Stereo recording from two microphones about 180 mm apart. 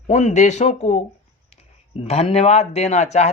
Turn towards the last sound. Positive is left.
turn(degrees=40)  # may be behind; listen again after turning